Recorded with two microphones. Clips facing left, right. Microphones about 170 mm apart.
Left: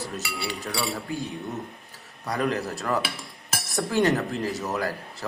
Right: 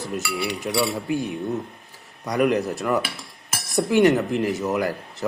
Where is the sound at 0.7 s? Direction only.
20° right (ahead or behind).